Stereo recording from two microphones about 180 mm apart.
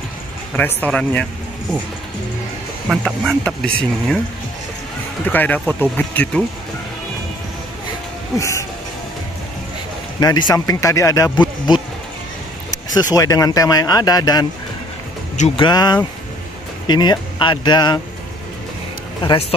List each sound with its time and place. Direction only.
0.6 s speech: 10° left (ahead or behind)
2.9 s speech: centre (ahead or behind)
5.2 s speech: 10° left (ahead or behind)
8.4 s speech: 15° left (ahead or behind)
10.2 s speech: 20° left (ahead or behind)
12.9 s speech: 20° left (ahead or behind)
15.3 s speech: 40° left (ahead or behind)
15.6 s speech: 25° left (ahead or behind)